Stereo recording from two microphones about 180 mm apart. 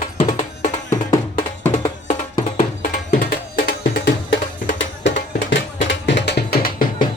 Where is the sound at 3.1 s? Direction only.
55° left (ahead or behind).